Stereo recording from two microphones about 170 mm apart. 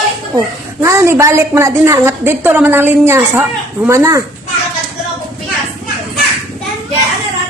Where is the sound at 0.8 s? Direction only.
15° right (ahead or behind).